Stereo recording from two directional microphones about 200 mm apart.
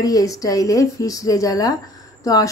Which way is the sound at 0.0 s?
15° left (ahead or behind).